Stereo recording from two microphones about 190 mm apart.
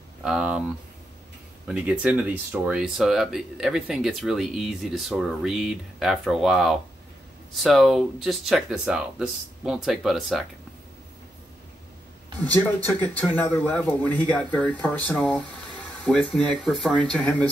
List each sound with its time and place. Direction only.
0.2 s speech: 5° right (ahead or behind)
13.0 s speech: 10° left (ahead or behind)